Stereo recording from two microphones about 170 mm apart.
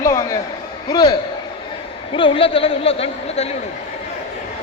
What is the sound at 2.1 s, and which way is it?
Speech, 30° left (ahead or behind).